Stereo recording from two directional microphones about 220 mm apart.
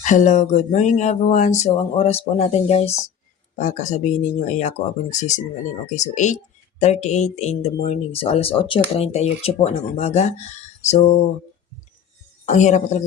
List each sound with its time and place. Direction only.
0.0 s speech: 35° left (ahead or behind)
12.5 s speech: 30° left (ahead or behind)